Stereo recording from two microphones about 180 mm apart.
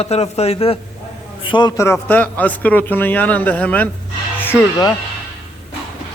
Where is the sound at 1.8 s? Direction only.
10° left (ahead or behind).